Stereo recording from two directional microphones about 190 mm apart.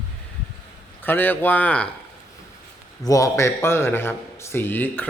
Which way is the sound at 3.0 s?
15° left (ahead or behind).